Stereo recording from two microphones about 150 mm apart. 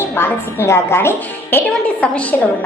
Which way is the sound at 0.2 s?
15° left (ahead or behind).